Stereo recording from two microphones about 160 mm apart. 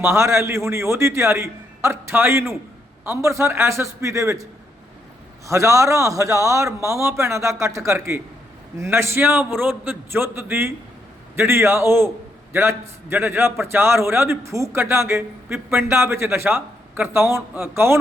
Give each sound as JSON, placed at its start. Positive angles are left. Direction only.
{"t": 0.0, "sound": "a man's voice", "side_deg": -15}
{"t": 5.5, "sound": "a man's voice", "side_deg": -20}